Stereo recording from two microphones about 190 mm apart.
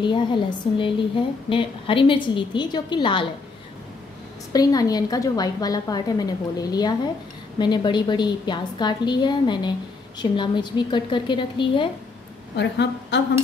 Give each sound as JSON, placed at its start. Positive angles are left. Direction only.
{"t": 0.0, "sound": "a woman's voice", "side_deg": 25}
{"t": 4.5, "sound": "a woman's voice", "side_deg": 20}
{"t": 12.5, "sound": "a woman's voice", "side_deg": 65}